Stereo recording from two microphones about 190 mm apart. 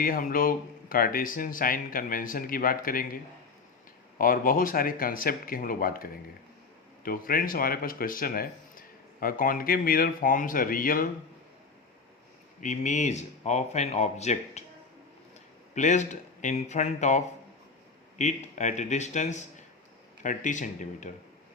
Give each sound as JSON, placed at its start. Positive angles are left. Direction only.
{"t": 0.0, "sound": "speech", "side_deg": 50}
{"t": 4.2, "sound": "speech", "side_deg": 50}
{"t": 12.5, "sound": "speech", "side_deg": 40}
{"t": 15.7, "sound": "speech", "side_deg": 40}